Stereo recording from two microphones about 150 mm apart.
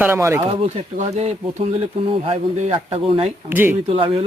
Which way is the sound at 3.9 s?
35° right (ahead or behind).